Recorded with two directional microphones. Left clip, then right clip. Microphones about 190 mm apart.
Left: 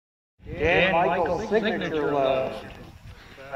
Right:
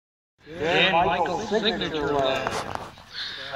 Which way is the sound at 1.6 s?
45° left (ahead or behind).